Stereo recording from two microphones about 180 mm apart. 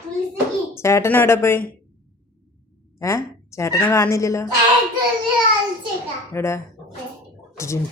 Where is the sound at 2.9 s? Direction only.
15° left (ahead or behind).